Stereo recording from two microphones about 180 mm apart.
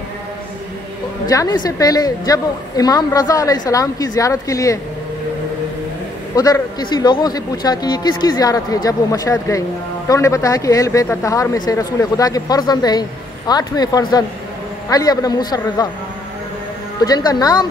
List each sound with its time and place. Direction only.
1.2 s a woman's voice: 20° left (ahead or behind)
6.3 s a woman's voice: 20° left (ahead or behind)
17.0 s a woman's voice: 20° left (ahead or behind)